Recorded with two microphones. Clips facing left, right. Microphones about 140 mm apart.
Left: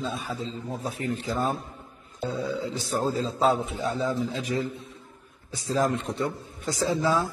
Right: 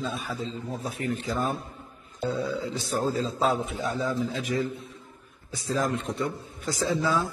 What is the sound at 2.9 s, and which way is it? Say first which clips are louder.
A man's voice: even; 30° left (ahead or behind).